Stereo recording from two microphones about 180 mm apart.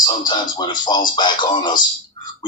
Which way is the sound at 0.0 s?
25° left (ahead or behind).